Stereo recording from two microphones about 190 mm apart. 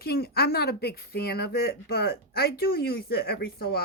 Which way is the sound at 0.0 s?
55° left (ahead or behind).